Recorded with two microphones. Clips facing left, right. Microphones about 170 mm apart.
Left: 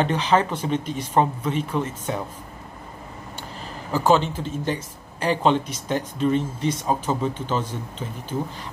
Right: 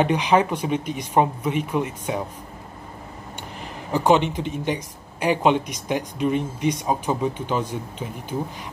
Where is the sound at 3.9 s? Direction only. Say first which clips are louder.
Right 1 dB; 20° right (ahead or behind).